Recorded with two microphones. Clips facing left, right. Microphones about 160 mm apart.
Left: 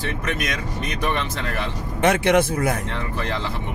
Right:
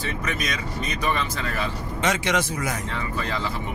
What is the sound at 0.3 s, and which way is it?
Speech, 60° left (ahead or behind).